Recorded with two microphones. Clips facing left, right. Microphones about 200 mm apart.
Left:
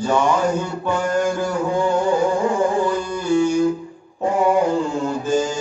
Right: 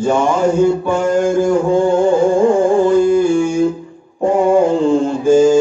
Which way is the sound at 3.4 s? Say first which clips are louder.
Right 3 dB; 25° right (ahead or behind).